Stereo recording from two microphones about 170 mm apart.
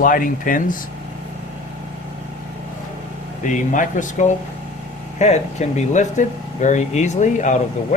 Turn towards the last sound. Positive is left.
turn(degrees=45)  # may be behind; listen again after turning